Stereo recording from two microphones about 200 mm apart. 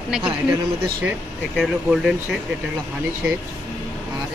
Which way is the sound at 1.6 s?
5° right (ahead or behind).